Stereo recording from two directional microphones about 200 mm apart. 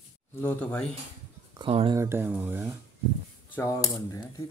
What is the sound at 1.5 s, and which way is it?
Speech, 25° right (ahead or behind).